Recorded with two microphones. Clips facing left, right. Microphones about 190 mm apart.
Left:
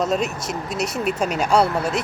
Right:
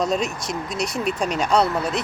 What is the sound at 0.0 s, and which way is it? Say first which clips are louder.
Speech: left 1 dB; 5° left (ahead or behind).